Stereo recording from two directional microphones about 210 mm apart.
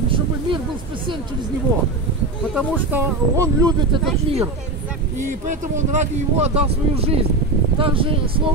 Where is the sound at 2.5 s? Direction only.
5° right (ahead or behind).